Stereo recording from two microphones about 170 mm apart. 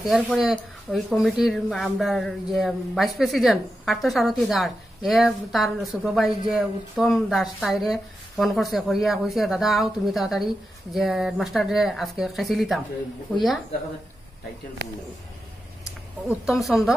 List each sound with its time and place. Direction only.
0.0 s speech: centre (ahead or behind)
14.8 s speech: 75° right (ahead or behind)
16.3 s speech: centre (ahead or behind)